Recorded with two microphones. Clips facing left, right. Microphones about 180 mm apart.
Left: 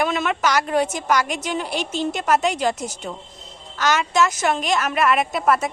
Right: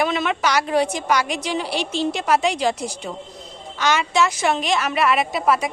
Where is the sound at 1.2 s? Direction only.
45° left (ahead or behind).